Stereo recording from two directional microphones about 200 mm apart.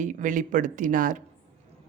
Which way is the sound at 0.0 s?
40° right (ahead or behind).